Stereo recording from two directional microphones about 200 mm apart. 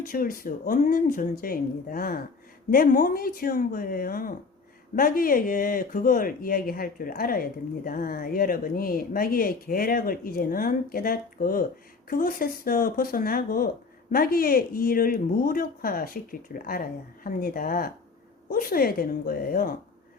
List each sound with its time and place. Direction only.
0.1 s speech: 45° left (ahead or behind)